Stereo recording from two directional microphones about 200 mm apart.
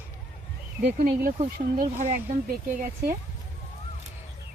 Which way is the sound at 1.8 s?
35° right (ahead or behind).